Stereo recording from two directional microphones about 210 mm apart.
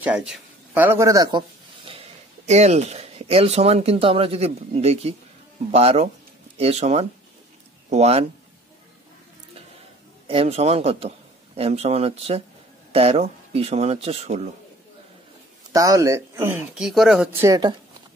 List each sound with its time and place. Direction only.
0.0 s speech: 5° right (ahead or behind)
1.9 s speech: 30° right (ahead or behind)
10.2 s a man's voice: 25° right (ahead or behind)
15.7 s speech: 15° right (ahead or behind)
17.4 s speech: 15° right (ahead or behind)